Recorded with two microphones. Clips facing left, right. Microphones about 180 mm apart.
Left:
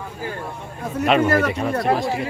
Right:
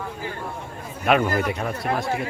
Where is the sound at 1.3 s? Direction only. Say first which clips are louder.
Left 5 dB; 75° left (ahead or behind).